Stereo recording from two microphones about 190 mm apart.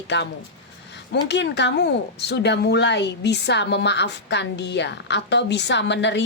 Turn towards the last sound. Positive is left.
turn(degrees=70)  # may be behind; listen again after turning